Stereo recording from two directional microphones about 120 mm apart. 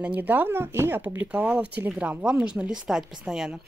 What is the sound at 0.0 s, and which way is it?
Speech, 15° right (ahead or behind).